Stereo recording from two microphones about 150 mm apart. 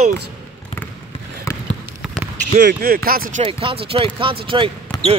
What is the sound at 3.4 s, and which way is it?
Speech, 40° right (ahead or behind).